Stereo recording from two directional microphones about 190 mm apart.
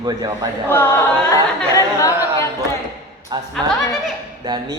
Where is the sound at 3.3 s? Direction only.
20° right (ahead or behind).